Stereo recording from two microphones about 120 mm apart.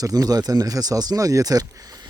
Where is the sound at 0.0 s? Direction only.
30° right (ahead or behind).